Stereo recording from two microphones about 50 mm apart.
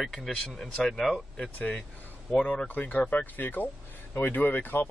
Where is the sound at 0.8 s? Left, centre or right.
Centre.